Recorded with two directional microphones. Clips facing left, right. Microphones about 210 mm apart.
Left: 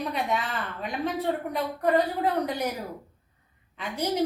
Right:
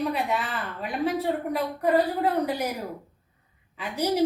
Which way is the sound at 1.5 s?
5° right (ahead or behind).